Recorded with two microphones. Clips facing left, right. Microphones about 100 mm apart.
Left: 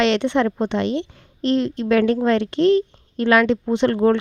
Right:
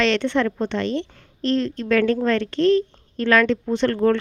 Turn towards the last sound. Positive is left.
turn(degrees=20)  # may be behind; listen again after turning